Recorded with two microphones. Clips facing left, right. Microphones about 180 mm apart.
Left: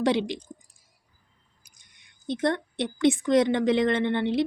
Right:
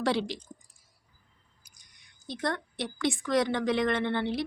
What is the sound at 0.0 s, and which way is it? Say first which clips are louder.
Speech: left 4 dB; 20° left (ahead or behind).